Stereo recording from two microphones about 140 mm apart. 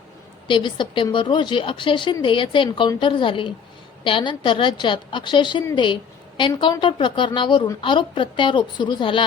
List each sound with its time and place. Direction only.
0.4 s a woman's voice: 35° left (ahead or behind)